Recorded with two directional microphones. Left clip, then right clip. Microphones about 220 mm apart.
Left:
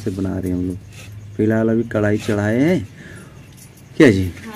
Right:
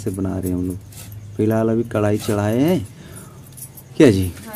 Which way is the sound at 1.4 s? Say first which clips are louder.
Left 1 dB; 5° right (ahead or behind).